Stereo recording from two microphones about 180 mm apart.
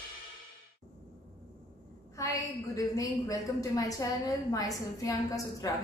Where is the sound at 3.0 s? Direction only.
20° left (ahead or behind).